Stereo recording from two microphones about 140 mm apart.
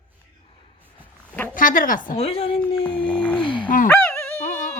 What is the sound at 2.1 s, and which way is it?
Speech, 45° left (ahead or behind).